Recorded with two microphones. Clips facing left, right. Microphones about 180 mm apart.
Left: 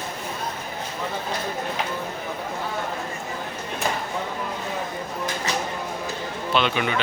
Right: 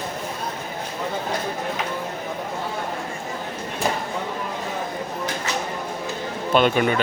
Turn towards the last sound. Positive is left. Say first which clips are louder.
# right 5 dB
turn(degrees=-45)  # may be behind; listen again after turning